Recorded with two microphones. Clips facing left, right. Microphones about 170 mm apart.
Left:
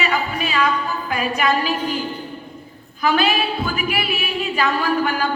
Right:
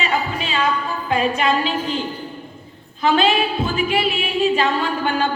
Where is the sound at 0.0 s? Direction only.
25° right (ahead or behind).